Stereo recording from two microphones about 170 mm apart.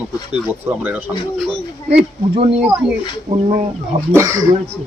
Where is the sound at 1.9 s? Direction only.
40° right (ahead or behind).